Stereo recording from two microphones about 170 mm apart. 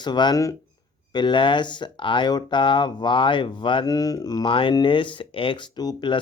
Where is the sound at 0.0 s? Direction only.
25° left (ahead or behind).